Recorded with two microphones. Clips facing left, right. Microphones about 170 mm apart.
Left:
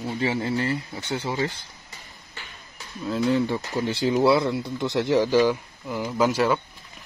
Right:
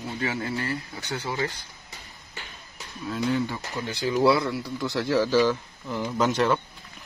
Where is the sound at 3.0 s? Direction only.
25° left (ahead or behind); by 6.6 s 5° left (ahead or behind).